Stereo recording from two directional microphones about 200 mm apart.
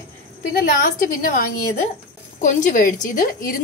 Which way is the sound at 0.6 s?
45° left (ahead or behind).